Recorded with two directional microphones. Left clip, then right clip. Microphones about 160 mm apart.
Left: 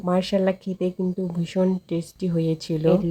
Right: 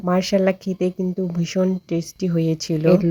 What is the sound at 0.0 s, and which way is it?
Speech, 20° right (ahead or behind).